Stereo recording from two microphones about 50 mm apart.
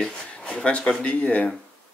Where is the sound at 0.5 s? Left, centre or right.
Left.